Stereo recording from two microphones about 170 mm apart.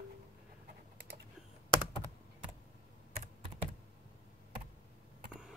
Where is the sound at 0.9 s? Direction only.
75° right (ahead or behind).